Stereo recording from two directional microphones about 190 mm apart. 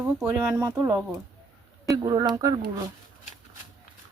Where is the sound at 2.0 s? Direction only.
20° right (ahead or behind).